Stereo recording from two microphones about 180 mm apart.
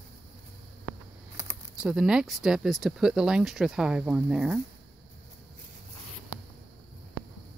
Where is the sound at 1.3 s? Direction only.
15° right (ahead or behind).